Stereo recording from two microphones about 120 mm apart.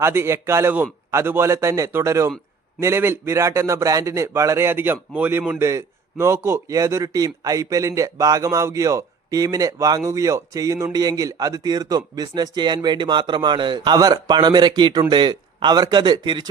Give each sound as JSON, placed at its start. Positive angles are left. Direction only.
{"t": 0.0, "sound": "a man's voice", "side_deg": -20}